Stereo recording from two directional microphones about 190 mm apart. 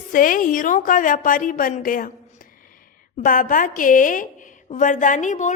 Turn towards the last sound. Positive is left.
turn(degrees=40)  # may be behind; listen again after turning